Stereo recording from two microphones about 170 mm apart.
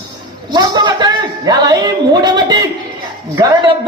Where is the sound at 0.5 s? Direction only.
25° right (ahead or behind).